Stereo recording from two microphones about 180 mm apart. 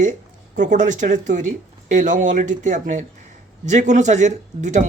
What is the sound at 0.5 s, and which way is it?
Speech, 45° right (ahead or behind).